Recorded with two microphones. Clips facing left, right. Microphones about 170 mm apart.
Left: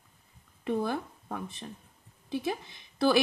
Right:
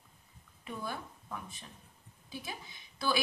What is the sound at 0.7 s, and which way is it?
Speech, 70° left (ahead or behind).